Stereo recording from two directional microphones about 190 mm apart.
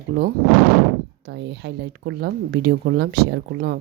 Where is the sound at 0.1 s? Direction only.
60° right (ahead or behind).